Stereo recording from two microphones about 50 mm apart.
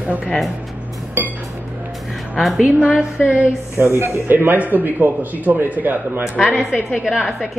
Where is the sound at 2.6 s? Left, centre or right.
Right.